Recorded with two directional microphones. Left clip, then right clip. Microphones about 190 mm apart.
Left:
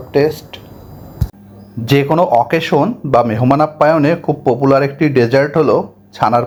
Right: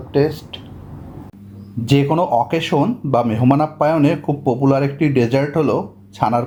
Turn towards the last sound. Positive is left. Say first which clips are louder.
# left 5 dB
turn(degrees=15)  # may be behind; listen again after turning